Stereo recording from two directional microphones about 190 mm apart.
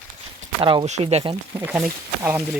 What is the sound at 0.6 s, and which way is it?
Speech, 25° right (ahead or behind).